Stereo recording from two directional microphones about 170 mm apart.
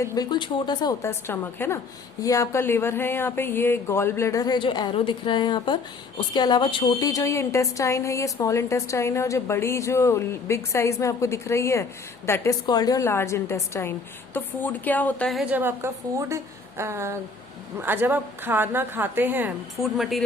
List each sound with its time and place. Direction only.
0.0 s a woman's voice: 20° left (ahead or behind); by 19.5 s 10° right (ahead or behind)
19.8 s speech: centre (ahead or behind)